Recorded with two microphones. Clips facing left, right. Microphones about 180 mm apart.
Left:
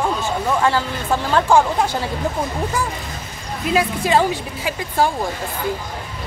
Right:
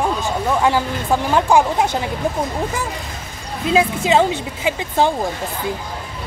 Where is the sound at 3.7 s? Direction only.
20° right (ahead or behind).